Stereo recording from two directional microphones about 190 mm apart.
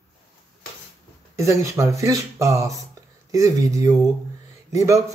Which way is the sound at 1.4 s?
15° right (ahead or behind).